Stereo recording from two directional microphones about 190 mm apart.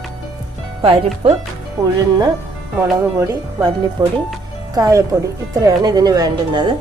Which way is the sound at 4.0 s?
25° right (ahead or behind).